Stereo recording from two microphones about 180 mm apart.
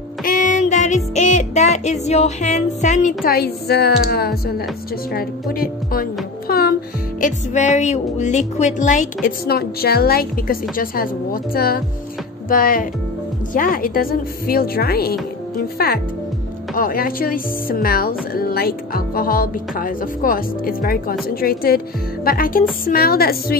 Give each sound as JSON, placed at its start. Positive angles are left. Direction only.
{"t": 0.2, "sound": "music", "side_deg": 45}
{"t": 5.1, "sound": "speech", "side_deg": 55}
{"t": 7.2, "sound": "speech", "side_deg": 45}
{"t": 9.5, "sound": "a woman's voice", "side_deg": 60}